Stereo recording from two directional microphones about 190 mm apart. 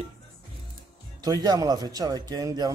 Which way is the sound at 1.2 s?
20° right (ahead or behind).